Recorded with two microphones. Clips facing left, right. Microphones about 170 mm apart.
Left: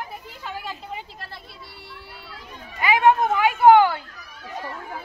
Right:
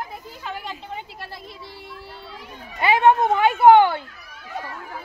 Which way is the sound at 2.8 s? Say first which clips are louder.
Right 1 dB; 25° right (ahead or behind).